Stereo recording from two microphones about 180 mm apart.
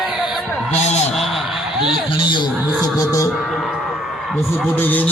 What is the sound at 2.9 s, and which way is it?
Speech, 20° left (ahead or behind).